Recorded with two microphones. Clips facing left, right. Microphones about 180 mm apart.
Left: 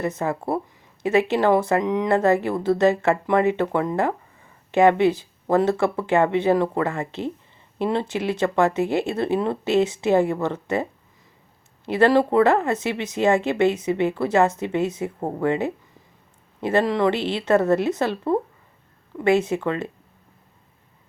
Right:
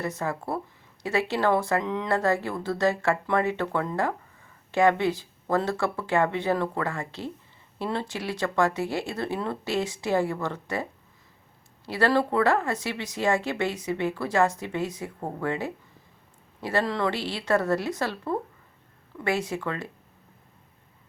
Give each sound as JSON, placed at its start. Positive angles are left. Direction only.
{"t": 0.0, "sound": "speech", "side_deg": 20}
{"t": 11.9, "sound": "speech", "side_deg": 20}